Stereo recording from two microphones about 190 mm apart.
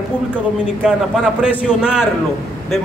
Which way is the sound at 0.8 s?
5° right (ahead or behind).